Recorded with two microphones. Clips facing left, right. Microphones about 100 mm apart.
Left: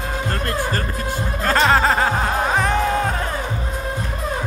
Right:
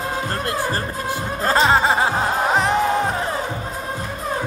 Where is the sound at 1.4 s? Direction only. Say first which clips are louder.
Even; 25° right (ahead or behind).